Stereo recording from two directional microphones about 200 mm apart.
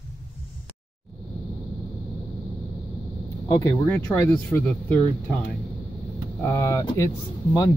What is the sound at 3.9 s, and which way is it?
Speech, 10° left (ahead or behind).